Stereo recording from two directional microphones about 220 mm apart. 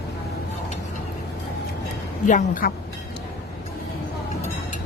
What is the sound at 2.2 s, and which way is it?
Speech, 40° left (ahead or behind).